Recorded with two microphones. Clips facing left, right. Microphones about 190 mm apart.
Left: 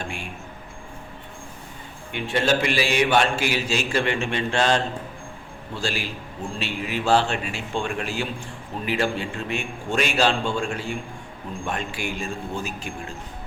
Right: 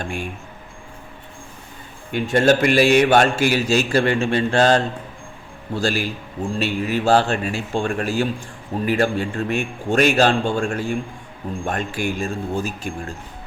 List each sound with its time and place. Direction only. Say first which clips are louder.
0.0 s speech: right 5 dB; 45° right (ahead or behind)
2.1 s a man's voice: right 6 dB; 45° right (ahead or behind)